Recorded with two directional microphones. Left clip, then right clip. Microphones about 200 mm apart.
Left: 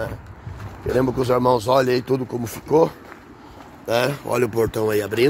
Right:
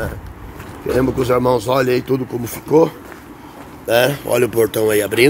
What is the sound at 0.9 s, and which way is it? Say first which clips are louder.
Speech: right 3 dB; 60° left (ahead or behind).